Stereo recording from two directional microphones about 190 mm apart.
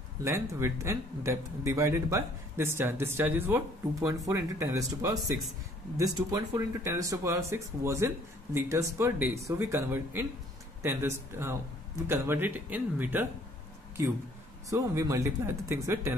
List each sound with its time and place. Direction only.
0.2 s a man's voice: 15° right (ahead or behind)
14.7 s a man's voice: 15° right (ahead or behind)